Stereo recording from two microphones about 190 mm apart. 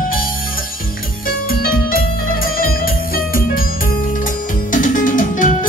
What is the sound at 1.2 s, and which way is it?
Music, 50° left (ahead or behind).